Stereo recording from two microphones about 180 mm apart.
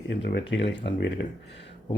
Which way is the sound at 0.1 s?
65° left (ahead or behind).